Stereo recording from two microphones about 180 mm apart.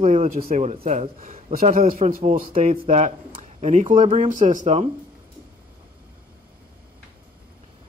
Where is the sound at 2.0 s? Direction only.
35° right (ahead or behind).